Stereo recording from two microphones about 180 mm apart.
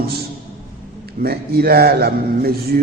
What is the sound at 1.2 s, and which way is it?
A man's voice, 60° right (ahead or behind).